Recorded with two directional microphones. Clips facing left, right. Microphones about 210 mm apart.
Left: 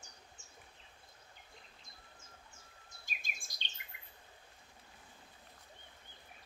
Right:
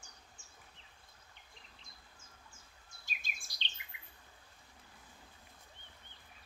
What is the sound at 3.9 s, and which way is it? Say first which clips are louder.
Bird: even; 50° left (ahead or behind).